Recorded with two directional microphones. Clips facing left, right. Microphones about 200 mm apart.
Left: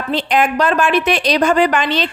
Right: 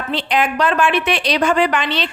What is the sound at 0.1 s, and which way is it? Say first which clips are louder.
A woman's voice: left 3 dB; 45° left (ahead or behind).